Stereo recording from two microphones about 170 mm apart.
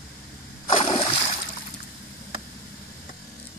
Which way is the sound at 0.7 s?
35° left (ahead or behind).